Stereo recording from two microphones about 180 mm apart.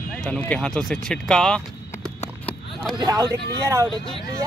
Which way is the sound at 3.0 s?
20° right (ahead or behind).